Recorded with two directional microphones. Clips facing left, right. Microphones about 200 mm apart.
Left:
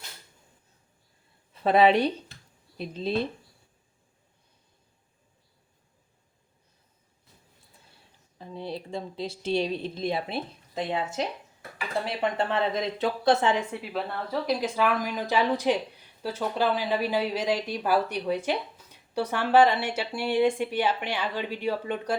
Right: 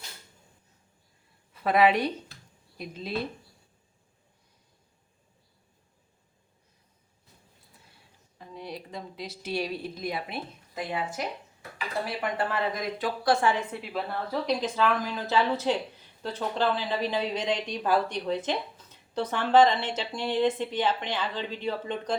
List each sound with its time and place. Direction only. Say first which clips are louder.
1.5 s a woman's voice: left 3 dB; 25° left (ahead or behind)
8.4 s speech: left 4 dB; 30° left (ahead or behind)
13.7 s a woman's voice: left 1 dB; centre (ahead or behind)